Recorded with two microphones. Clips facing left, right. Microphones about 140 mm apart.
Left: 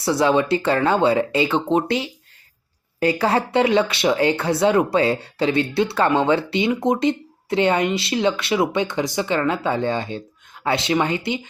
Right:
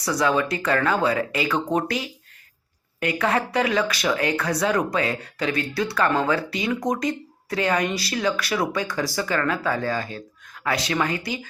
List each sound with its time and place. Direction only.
0.0 s speech: 25° left (ahead or behind)